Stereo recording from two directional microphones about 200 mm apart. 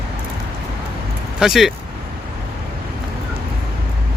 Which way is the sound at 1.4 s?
Centre (ahead or behind).